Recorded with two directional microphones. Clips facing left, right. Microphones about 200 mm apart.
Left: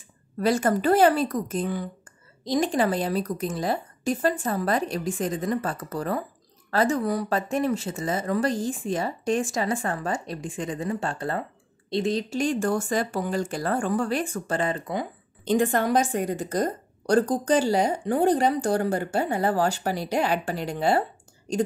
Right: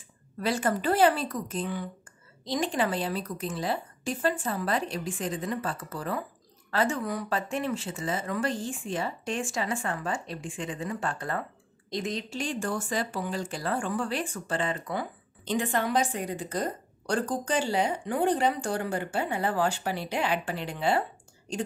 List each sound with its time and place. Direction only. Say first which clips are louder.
0.4 s a woman's voice: left 5 dB; 45° left (ahead or behind)